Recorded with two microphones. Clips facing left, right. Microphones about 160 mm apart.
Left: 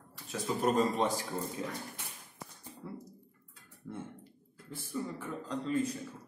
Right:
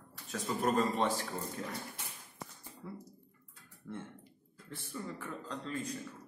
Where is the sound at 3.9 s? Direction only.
15° left (ahead or behind).